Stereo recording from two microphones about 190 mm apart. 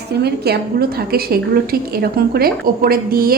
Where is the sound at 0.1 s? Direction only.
60° right (ahead or behind).